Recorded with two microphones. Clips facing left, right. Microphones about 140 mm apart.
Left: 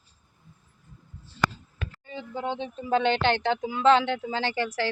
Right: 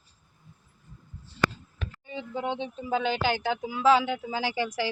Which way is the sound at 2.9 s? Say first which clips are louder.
Left 4 dB; 5° right (ahead or behind).